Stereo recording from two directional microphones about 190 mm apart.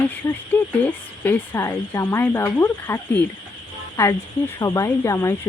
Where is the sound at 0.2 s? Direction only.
15° left (ahead or behind).